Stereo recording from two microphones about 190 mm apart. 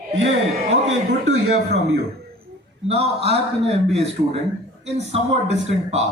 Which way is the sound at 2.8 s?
35° right (ahead or behind).